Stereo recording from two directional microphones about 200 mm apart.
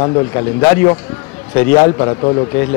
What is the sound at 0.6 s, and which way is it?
A man's voice, 10° left (ahead or behind).